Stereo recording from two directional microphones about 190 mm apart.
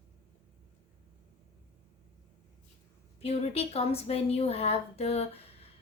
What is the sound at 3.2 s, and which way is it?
A woman's voice, 35° left (ahead or behind).